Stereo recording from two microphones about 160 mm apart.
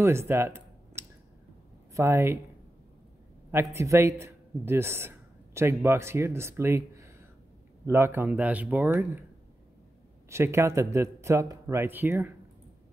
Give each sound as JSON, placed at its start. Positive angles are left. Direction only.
{"t": 0.0, "sound": "a sound", "side_deg": -15}
{"t": 2.0, "sound": "speech", "side_deg": -15}
{"t": 3.5, "sound": "a man's voice", "side_deg": -15}
{"t": 10.3, "sound": "speech", "side_deg": -15}